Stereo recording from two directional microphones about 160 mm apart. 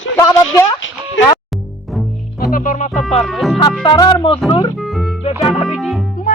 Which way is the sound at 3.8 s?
30° left (ahead or behind).